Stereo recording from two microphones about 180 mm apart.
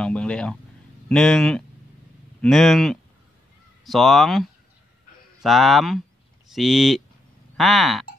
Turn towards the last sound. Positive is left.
turn(degrees=0)  # may be behind; listen again after turning